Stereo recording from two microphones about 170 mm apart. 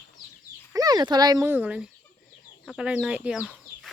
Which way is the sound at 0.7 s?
20° right (ahead or behind).